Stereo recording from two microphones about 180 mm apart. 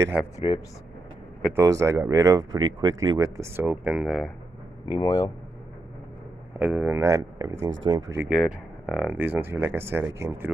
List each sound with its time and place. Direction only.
0.5 s speech: 30° left (ahead or behind)
1.5 s speech: 15° right (ahead or behind)
4.9 s speech: 20° left (ahead or behind)
6.6 s speech: 10° right (ahead or behind); by 8.2 s 25° right (ahead or behind)
8.2 s speech: 5° right (ahead or behind)